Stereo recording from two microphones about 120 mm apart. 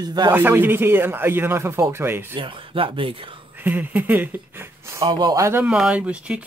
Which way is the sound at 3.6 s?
15° right (ahead or behind).